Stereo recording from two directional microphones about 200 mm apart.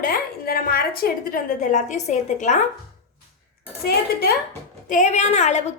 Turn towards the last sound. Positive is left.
turn(degrees=35)  # may be behind; listen again after turning